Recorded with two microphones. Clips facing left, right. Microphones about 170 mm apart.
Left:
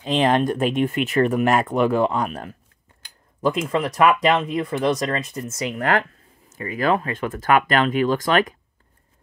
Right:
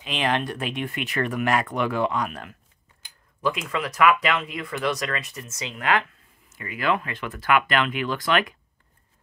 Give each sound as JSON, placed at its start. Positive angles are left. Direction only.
{"t": 0.1, "sound": "speech", "side_deg": 45}
{"t": 3.6, "sound": "speech", "side_deg": 25}
{"t": 5.8, "sound": "speech", "side_deg": 45}